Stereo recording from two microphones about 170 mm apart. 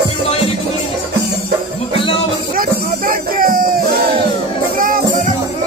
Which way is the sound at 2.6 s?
55° right (ahead or behind).